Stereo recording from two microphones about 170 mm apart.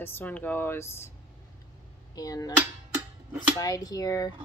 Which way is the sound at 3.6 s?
20° left (ahead or behind).